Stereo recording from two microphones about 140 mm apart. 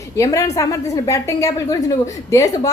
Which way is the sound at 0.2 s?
20° left (ahead or behind).